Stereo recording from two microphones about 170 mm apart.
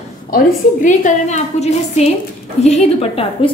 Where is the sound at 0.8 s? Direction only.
45° left (ahead or behind).